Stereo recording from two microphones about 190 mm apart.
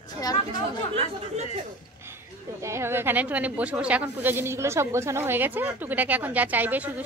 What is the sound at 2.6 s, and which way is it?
A woman's voice, 15° right (ahead or behind).